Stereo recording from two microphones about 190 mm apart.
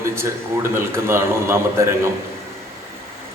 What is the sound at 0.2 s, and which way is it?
A man's voice, 15° right (ahead or behind).